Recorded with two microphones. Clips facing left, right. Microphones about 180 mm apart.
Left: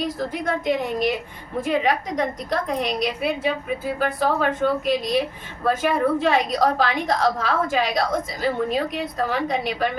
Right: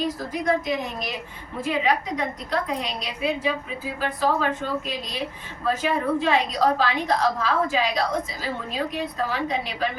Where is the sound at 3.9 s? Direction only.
55° left (ahead or behind).